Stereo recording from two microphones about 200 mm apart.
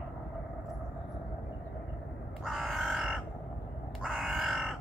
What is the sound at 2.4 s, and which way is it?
Crow, centre (ahead or behind).